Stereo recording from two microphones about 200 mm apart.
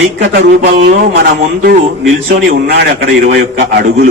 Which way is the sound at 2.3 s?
55° right (ahead or behind).